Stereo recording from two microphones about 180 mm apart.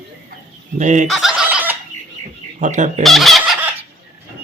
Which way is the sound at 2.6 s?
45° right (ahead or behind).